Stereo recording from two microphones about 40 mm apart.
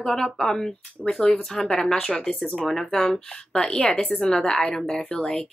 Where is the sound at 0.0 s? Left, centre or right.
Centre.